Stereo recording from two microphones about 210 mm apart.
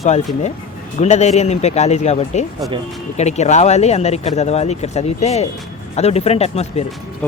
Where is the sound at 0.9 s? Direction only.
35° left (ahead or behind).